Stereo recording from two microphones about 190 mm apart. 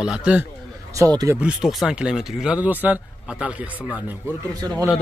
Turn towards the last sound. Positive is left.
turn(degrees=-20)  # may be behind; listen again after turning